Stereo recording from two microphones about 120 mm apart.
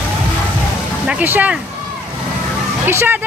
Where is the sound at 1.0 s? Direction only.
15° right (ahead or behind).